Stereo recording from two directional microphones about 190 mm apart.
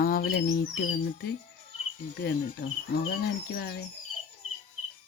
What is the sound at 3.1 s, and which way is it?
Speech, 55° left (ahead or behind).